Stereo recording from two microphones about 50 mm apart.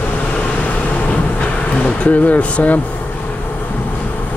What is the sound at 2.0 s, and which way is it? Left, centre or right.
Speech, left.